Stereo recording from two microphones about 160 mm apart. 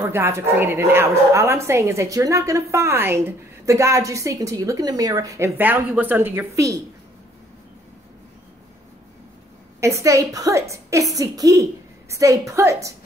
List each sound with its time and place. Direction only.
0.0 s a woman's voice: 15° right (ahead or behind)
9.8 s a woman's voice: 20° right (ahead or behind)